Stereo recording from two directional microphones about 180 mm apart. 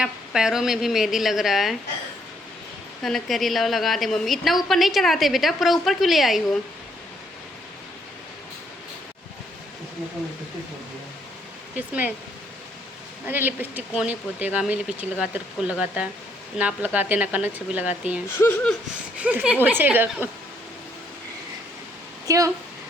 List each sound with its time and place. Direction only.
0.0 s a woman's voice: 5° right (ahead or behind)
3.0 s a woman's voice: centre (ahead or behind)
13.2 s speech: 10° right (ahead or behind)
18.3 s speech: 10° left (ahead or behind)
19.1 s speech: 10° right (ahead or behind)
22.3 s speech: 20° right (ahead or behind)